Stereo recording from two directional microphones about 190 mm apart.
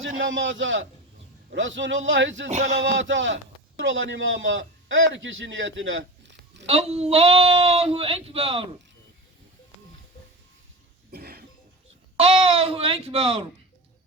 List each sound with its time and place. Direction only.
0.3 s a man's voice: 85° right; by 6.7 s 70° right (ahead or behind)
6.7 s speech: 35° right (ahead or behind)
11.1 s cough: 55° right (ahead or behind)
12.1 s speech: 30° right (ahead or behind)